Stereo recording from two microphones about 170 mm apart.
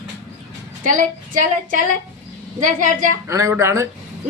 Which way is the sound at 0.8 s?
50° right (ahead or behind).